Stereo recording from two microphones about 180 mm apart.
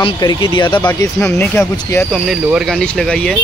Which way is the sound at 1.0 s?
15° left (ahead or behind).